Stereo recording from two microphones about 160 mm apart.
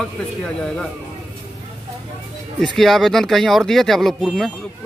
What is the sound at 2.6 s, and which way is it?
Speech, centre (ahead or behind).